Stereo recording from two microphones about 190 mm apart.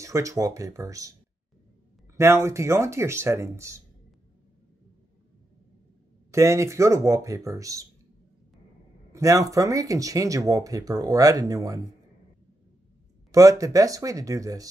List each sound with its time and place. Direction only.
0.0 s speech: 15° right (ahead or behind)
2.1 s speech: 15° right (ahead or behind)
6.3 s speech: 15° right (ahead or behind)
9.1 s speech: 15° right (ahead or behind)
13.3 s speech: 15° right (ahead or behind)